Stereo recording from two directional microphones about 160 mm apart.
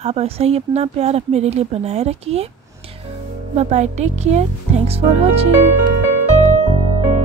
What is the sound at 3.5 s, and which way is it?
Speech, 45° right (ahead or behind).